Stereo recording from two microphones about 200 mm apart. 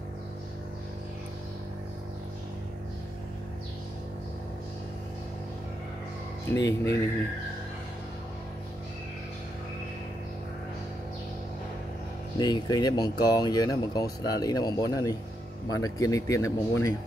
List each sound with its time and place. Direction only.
6.5 s speech: 15° left (ahead or behind)
12.4 s speech: 20° left (ahead or behind)